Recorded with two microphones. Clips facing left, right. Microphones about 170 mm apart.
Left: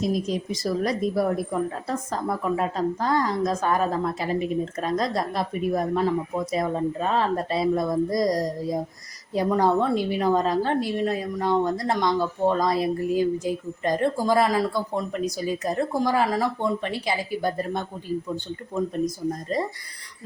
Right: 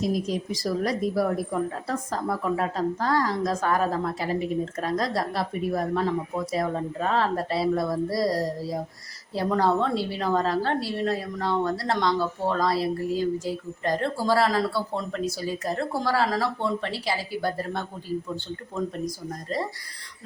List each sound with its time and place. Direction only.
0.0 s a woman's voice: 20° left (ahead or behind)
19.5 s a woman's voice: 20° left (ahead or behind)